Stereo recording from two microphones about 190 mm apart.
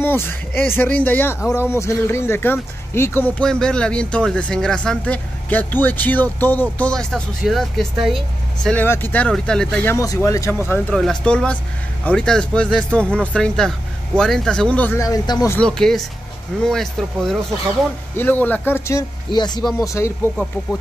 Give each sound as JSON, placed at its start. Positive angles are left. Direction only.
{"t": 0.0, "sound": "speech", "side_deg": 10}
{"t": 9.9, "sound": "speech", "side_deg": 15}
{"t": 15.6, "sound": "speech", "side_deg": 5}